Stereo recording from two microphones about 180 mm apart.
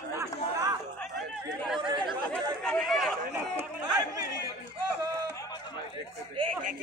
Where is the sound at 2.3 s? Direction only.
5° left (ahead or behind).